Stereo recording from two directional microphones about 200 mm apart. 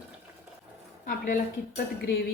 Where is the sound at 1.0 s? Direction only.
45° left (ahead or behind).